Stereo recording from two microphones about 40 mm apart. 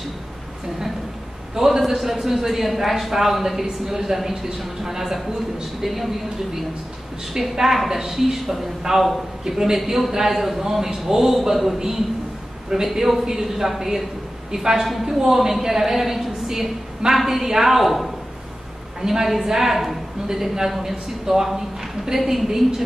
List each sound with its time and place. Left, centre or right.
1.5 s a man's voice: centre